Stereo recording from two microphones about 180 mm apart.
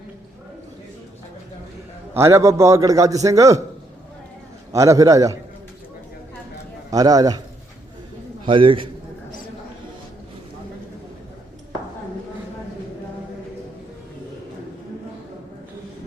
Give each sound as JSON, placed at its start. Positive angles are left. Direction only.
{"t": 2.1, "sound": "a man's voice", "side_deg": -15}
{"t": 4.7, "sound": "a man's voice", "side_deg": -20}
{"t": 6.9, "sound": "a man's voice", "side_deg": -20}
{"t": 8.4, "sound": "a man's voice", "side_deg": -30}